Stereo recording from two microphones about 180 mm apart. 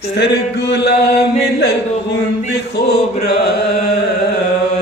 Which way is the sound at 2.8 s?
65° left (ahead or behind).